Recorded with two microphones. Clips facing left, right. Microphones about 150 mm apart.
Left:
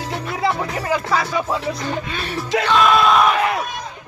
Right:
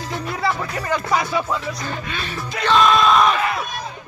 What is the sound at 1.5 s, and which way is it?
Speech, 25° left (ahead or behind).